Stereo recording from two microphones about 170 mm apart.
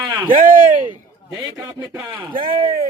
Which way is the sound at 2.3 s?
55° right (ahead or behind).